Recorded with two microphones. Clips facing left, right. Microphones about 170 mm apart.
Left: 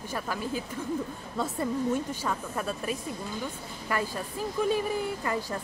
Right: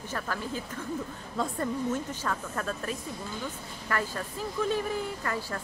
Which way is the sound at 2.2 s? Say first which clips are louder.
Left 1 dB; 10° left (ahead or behind).